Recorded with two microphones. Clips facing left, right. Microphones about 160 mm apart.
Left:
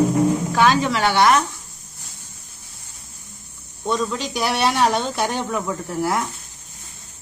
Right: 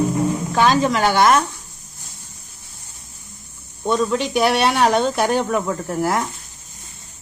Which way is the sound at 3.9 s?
60° right (ahead or behind).